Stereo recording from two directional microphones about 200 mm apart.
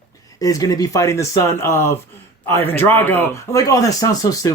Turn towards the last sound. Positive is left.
turn(degrees=15)  # may be behind; listen again after turning